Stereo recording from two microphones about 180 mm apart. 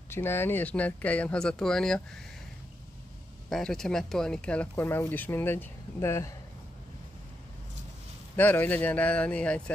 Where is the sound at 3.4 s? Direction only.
Centre (ahead or behind).